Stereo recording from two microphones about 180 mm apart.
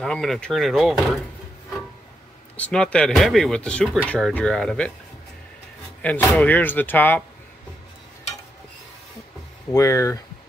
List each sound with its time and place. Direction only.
0.0 s speech: centre (ahead or behind)
2.5 s speech: 5° left (ahead or behind)
6.0 s speech: 10° left (ahead or behind)
9.7 s speech: 15° left (ahead or behind)